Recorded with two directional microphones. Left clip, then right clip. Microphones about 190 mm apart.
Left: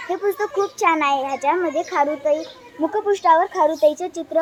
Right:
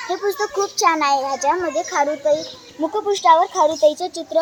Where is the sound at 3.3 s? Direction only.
Centre (ahead or behind).